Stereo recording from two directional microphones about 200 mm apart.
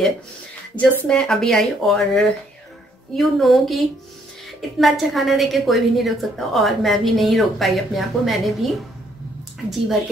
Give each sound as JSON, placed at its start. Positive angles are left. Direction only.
{"t": 0.7, "sound": "a woman's voice", "side_deg": 5}